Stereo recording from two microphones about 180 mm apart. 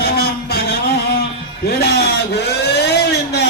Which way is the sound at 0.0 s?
60° left (ahead or behind).